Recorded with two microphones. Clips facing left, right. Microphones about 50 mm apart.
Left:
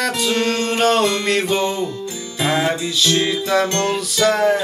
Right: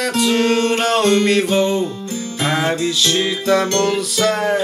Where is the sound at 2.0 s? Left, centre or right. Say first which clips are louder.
Right 3 dB; right.